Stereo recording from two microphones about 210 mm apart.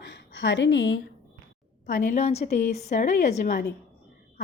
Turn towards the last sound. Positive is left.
turn(degrees=40)  # may be behind; listen again after turning